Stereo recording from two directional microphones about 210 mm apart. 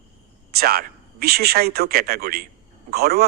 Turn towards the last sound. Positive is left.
turn(degrees=-50)  # may be behind; listen again after turning